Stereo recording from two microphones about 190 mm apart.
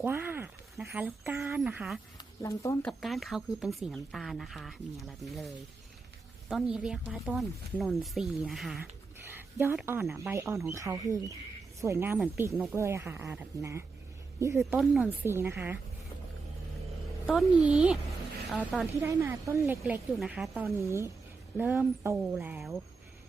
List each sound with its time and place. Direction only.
0.0 s speech: 10° right (ahead or behind)
2.4 s speech: 15° left (ahead or behind)
2.8 s speech: centre (ahead or behind); by 14.6 s 15° right (ahead or behind)
14.7 s speech: centre (ahead or behind)
15.2 s speech: 10° right (ahead or behind)
17.6 s speech: 5° right (ahead or behind)
19.0 s speech: 15° right (ahead or behind)
19.8 s speech: centre (ahead or behind)
20.7 s speech: 15° right (ahead or behind)